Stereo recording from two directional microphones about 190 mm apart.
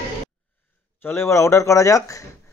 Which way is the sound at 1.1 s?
15° left (ahead or behind).